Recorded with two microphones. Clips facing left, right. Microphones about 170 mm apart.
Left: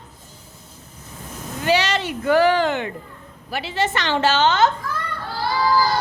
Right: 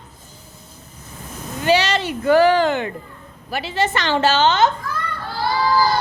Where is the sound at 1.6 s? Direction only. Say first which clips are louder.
Right 2 dB; 30° right (ahead or behind).